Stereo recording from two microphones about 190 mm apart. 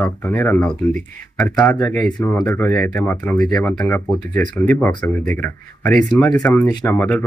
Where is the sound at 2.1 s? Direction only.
20° left (ahead or behind).